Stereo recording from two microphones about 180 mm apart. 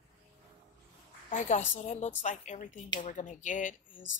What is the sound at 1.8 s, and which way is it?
A woman's voice, 40° left (ahead or behind).